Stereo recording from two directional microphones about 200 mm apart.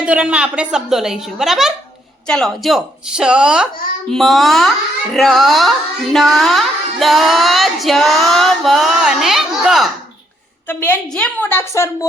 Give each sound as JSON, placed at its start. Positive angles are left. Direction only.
{"t": 0.0, "sound": "music", "side_deg": -5}
{"t": 10.7, "sound": "a woman's voice", "side_deg": 10}